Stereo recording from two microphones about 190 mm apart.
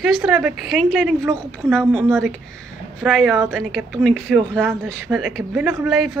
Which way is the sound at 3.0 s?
Centre (ahead or behind).